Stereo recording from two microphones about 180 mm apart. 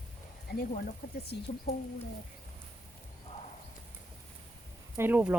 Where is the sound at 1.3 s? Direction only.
70° left (ahead or behind).